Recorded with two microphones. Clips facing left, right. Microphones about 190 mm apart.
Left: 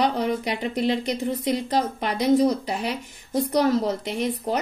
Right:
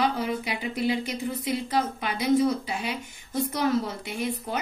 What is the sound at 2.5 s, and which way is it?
Speech, centre (ahead or behind).